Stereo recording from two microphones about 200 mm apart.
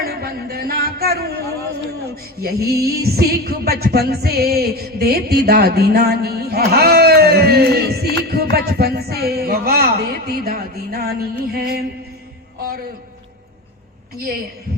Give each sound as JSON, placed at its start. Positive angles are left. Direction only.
{"t": 0.0, "sound": "a sound", "side_deg": -50}
{"t": 2.4, "sound": "music", "side_deg": -50}
{"t": 14.2, "sound": "music", "side_deg": -50}